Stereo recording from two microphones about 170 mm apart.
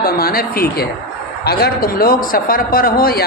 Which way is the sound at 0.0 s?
60° left (ahead or behind).